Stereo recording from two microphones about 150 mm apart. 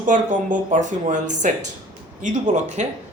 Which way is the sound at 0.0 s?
60° right (ahead or behind).